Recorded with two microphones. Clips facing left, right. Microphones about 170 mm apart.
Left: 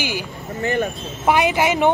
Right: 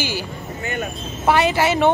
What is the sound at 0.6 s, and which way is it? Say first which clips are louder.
Speech: left 6 dB; 35° left (ahead or behind).